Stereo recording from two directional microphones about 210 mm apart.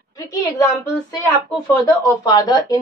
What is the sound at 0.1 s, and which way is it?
Speech, 15° left (ahead or behind).